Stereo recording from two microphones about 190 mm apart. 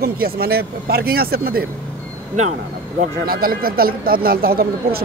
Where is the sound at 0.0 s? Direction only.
55° right (ahead or behind).